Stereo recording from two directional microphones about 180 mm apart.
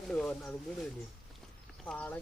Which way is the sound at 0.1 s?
5° left (ahead or behind).